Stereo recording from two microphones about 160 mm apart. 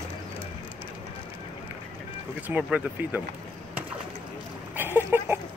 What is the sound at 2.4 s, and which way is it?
Speech, 10° right (ahead or behind).